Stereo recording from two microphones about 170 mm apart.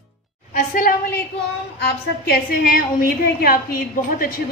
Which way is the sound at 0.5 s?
55° left (ahead or behind).